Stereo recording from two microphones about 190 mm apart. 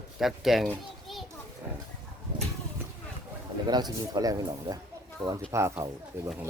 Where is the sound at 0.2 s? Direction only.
Centre (ahead or behind).